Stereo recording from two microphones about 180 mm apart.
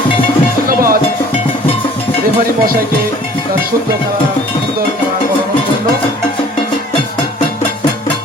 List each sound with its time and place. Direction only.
0.7 s music: 55° right (ahead or behind)